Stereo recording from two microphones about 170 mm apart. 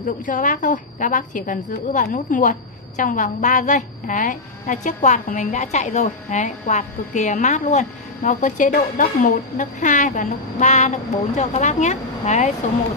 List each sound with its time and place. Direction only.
0.0 s a woman's voice: 50° left (ahead or behind)